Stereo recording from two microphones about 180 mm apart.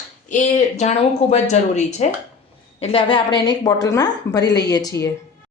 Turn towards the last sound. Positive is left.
turn(degrees=20)  # may be behind; listen again after turning